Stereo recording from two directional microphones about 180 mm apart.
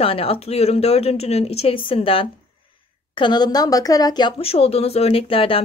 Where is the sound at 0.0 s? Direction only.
30° left (ahead or behind).